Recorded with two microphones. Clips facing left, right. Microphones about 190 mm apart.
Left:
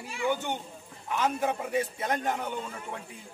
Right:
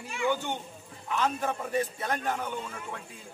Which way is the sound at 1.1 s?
15° left (ahead or behind).